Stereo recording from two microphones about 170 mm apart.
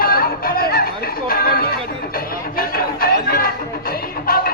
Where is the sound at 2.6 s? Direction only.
60° left (ahead or behind).